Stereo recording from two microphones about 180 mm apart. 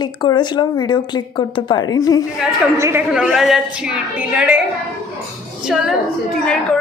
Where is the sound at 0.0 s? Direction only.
25° left (ahead or behind).